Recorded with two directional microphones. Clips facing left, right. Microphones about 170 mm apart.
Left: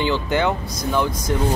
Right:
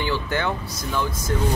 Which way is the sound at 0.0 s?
20° left (ahead or behind).